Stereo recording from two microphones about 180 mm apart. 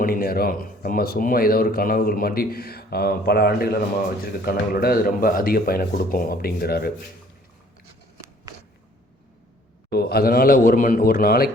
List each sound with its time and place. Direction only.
0.0 s speech: 55° left (ahead or behind)
9.9 s speech: 60° left (ahead or behind)